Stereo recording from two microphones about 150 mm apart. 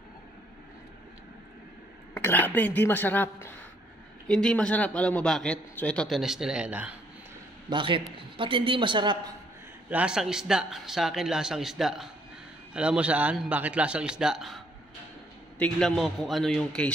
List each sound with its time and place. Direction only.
2.1 s a woman's voice: 15° left (ahead or behind); by 7.0 s 10° right (ahead or behind)
7.7 s a woman's voice: 35° right (ahead or behind)
9.8 s a man's voice: 10° right (ahead or behind)
15.6 s a man's voice: 5° left (ahead or behind)